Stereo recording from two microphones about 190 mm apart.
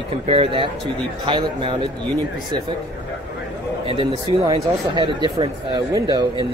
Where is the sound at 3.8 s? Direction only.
25° right (ahead or behind).